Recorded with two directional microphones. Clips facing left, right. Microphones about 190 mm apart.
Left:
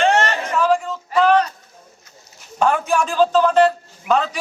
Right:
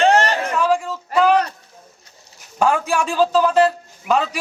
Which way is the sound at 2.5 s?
10° right (ahead or behind).